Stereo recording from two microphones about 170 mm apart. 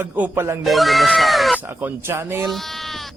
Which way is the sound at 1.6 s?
10° right (ahead or behind).